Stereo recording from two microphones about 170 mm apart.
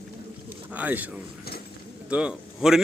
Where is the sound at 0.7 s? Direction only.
10° right (ahead or behind).